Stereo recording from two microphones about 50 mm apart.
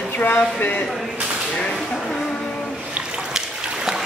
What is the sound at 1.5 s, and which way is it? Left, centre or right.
Whip, centre.